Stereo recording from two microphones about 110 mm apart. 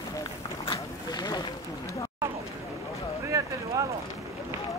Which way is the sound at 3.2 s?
30° right (ahead or behind).